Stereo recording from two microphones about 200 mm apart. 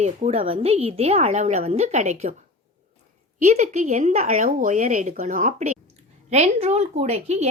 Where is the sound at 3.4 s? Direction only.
35° right (ahead or behind).